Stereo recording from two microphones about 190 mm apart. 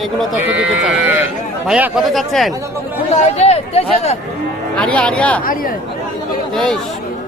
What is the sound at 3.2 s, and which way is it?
Speech, 35° left (ahead or behind).